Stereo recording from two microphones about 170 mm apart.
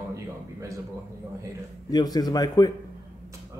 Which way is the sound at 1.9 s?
20° left (ahead or behind).